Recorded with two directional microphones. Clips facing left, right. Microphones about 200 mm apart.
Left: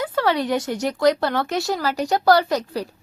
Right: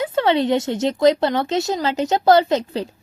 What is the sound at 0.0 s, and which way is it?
Speech, 25° right (ahead or behind).